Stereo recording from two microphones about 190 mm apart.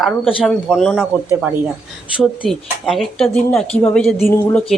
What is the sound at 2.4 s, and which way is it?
Speech, centre (ahead or behind).